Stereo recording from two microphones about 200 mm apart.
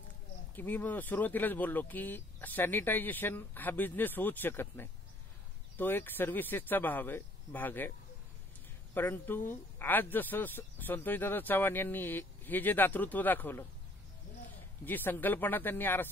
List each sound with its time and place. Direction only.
0.6 s speech: 10° left (ahead or behind)
8.9 s speech: 10° left (ahead or behind)
14.9 s speech: 10° left (ahead or behind)